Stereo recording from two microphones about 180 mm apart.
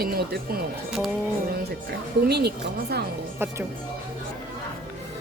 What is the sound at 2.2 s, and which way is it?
Speech, 60° right (ahead or behind).